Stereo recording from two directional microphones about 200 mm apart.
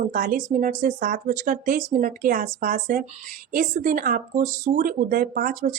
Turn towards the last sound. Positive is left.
turn(degrees=-45)  # may be behind; listen again after turning